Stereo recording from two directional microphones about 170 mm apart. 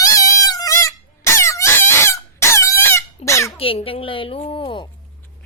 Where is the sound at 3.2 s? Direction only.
15° left (ahead or behind).